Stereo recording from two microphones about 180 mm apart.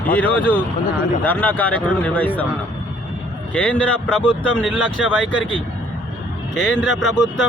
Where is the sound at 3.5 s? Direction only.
5° left (ahead or behind).